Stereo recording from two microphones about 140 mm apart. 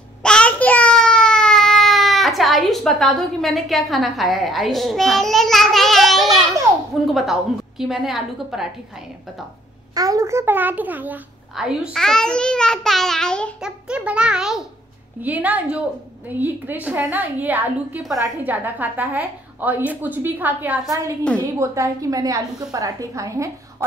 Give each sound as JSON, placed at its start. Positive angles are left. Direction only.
{"t": 0.2, "sound": "a sound", "side_deg": 5}
{"t": 7.1, "sound": "a child's voice", "side_deg": 0}
{"t": 9.9, "sound": "a child's voice", "side_deg": -25}
{"t": 13.6, "sound": "a child's voice", "side_deg": -5}